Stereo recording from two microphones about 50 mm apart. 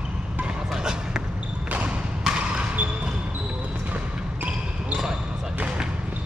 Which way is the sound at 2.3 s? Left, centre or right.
Right.